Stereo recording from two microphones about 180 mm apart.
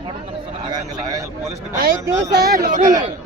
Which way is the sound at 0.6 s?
20° right (ahead or behind).